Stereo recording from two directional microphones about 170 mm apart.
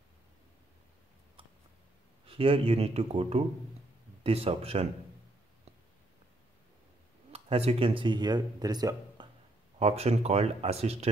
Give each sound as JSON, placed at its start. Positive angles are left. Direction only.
{"t": 2.2, "sound": "speech", "side_deg": -35}
{"t": 7.3, "sound": "speech", "side_deg": -35}
{"t": 9.8, "sound": "speech", "side_deg": -35}